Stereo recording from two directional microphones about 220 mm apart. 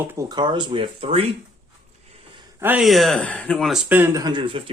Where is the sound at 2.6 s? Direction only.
5° right (ahead or behind).